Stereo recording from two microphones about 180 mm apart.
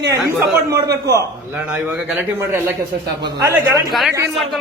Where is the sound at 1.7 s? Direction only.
5° right (ahead or behind).